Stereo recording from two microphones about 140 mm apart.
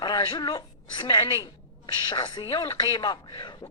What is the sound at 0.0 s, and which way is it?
A woman's voice, 30° left (ahead or behind).